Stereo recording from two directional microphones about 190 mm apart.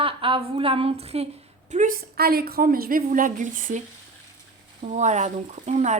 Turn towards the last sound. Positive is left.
turn(degrees=-40)  # may be behind; listen again after turning